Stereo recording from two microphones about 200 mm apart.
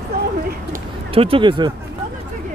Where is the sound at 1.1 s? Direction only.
25° right (ahead or behind).